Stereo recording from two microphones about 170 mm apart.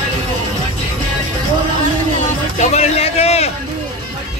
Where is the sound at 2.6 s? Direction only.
40° left (ahead or behind).